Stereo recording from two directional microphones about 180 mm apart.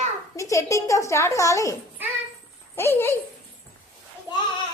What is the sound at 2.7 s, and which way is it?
Speech, 15° left (ahead or behind).